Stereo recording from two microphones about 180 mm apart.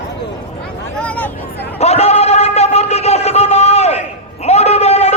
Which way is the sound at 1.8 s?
35° left (ahead or behind).